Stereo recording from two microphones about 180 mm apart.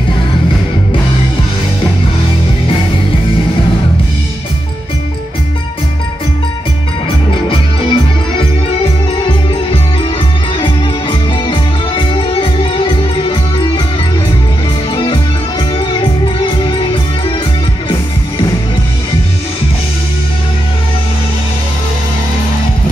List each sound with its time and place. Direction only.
7.4 s music: 30° left (ahead or behind)
15.8 s music: 25° left (ahead or behind)